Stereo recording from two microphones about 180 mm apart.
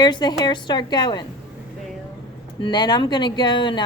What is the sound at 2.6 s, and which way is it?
A woman's voice, 25° left (ahead or behind).